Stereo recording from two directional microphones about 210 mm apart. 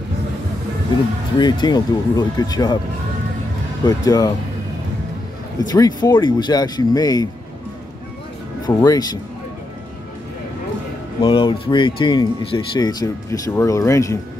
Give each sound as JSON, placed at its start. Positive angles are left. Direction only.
{"t": 1.4, "sound": "speech", "side_deg": 20}
{"t": 3.8, "sound": "speech", "side_deg": 15}
{"t": 5.7, "sound": "speech", "side_deg": 20}
{"t": 8.6, "sound": "speech", "side_deg": 15}
{"t": 11.1, "sound": "speech", "side_deg": 20}